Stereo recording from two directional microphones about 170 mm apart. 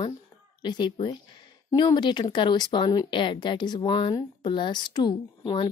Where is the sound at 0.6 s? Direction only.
25° left (ahead or behind).